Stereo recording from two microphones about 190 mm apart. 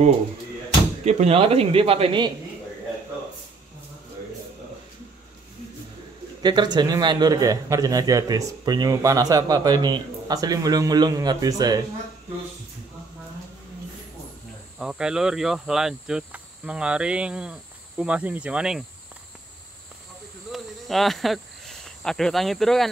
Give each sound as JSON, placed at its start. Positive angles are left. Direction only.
{"t": 1.0, "sound": "a man's voice", "side_deg": -35}
{"t": 6.4, "sound": "a man's voice", "side_deg": -25}
{"t": 14.8, "sound": "cricket", "side_deg": -5}
{"t": 20.5, "sound": "cricket", "side_deg": 0}